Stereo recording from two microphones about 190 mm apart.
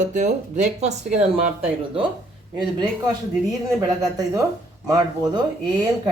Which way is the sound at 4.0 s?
20° right (ahead or behind).